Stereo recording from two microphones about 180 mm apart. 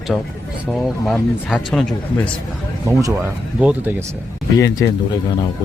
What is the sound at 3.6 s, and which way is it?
Speech, 10° right (ahead or behind).